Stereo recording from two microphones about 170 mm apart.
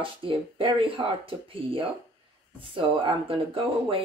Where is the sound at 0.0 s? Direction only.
30° right (ahead or behind).